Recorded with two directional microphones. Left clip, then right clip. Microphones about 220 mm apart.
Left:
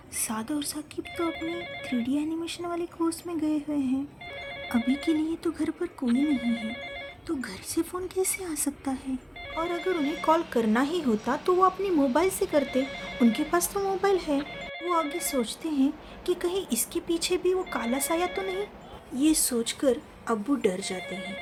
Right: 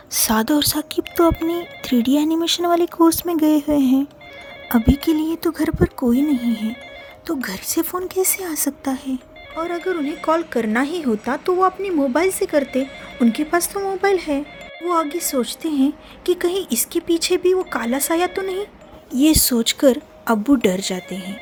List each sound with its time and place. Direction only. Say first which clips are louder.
0.1 s speech: right 14 dB; 35° right (ahead or behind)
6.3 s ringtone: right 7 dB; 5° left (ahead or behind)
7.3 s speech: right 10 dB; 35° right (ahead or behind)
9.7 s ringtone: right 6 dB; centre (ahead or behind)
10.2 s a woman's voice: right 5 dB; 20° right (ahead or behind); by 21.0 s 40° right (ahead or behind)
21.1 s ringtone: right 4 dB; 5° left (ahead or behind)